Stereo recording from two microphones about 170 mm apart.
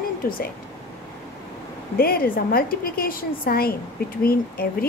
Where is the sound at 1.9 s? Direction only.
60° left (ahead or behind).